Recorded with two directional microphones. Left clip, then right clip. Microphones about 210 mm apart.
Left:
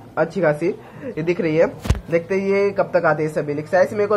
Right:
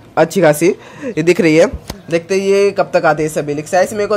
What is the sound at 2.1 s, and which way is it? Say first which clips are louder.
Speech: right 6 dB; 25° right (ahead or behind).